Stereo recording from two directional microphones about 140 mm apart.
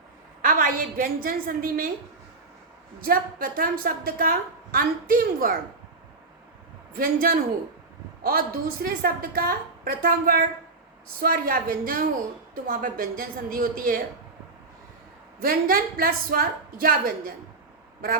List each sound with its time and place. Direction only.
0.4 s a woman's voice: 85° right
3.0 s a woman's voice: 90° right
6.9 s a woman's voice: 90° right
15.4 s a woman's voice: 90° right